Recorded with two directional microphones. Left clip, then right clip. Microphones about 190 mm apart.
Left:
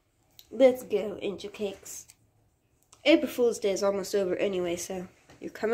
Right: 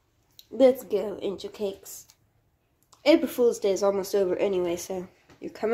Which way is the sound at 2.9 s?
10° right (ahead or behind).